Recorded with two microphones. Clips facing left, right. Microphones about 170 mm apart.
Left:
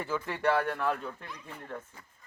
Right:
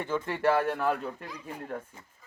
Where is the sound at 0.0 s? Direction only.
Centre (ahead or behind).